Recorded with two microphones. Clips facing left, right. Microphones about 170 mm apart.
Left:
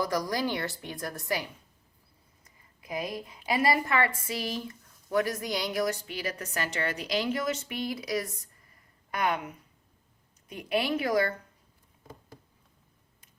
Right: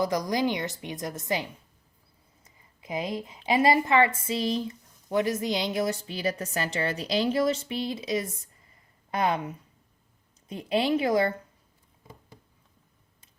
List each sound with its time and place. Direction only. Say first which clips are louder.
0.0 s a woman's voice: right 3 dB; 20° right (ahead or behind)
10.5 s a woman's voice: right 4 dB; 25° right (ahead or behind)